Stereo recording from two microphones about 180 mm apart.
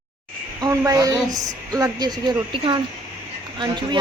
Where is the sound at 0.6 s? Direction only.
20° right (ahead or behind).